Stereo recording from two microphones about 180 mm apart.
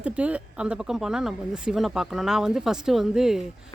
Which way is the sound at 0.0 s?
5° right (ahead or behind).